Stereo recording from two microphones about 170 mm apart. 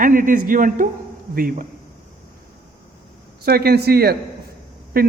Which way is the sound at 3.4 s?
65° right (ahead or behind).